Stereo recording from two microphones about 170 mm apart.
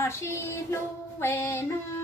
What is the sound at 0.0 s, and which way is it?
Female singing, 15° left (ahead or behind).